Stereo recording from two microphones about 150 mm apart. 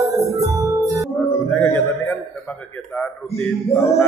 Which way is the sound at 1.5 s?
15° left (ahead or behind).